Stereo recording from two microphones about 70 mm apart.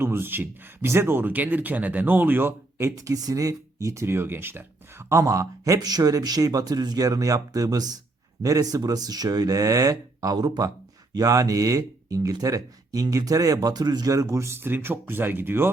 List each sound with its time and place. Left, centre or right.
0.0 s speech: right
2.9 s speech: right
4.0 s speech: right
8.4 s speech: right
8.8 s speech: right
11.1 s speech: right
14.1 s speech: right